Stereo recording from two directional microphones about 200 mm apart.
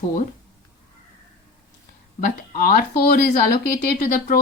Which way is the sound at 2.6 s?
45° left (ahead or behind).